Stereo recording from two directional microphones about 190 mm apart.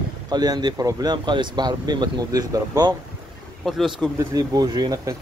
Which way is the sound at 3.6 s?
Centre (ahead or behind).